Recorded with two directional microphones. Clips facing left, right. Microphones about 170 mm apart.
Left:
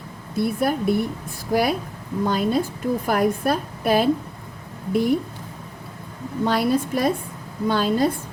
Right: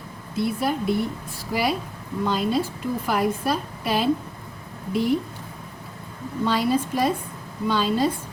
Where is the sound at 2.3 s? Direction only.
50° left (ahead or behind).